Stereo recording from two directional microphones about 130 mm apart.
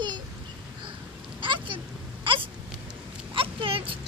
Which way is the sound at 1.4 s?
40° right (ahead or behind).